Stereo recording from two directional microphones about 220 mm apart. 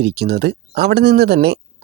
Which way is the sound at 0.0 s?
45° right (ahead or behind).